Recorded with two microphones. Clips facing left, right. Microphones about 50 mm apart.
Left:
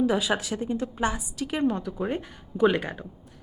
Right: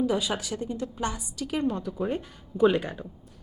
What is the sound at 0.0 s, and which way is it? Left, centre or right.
A woman's voice, centre.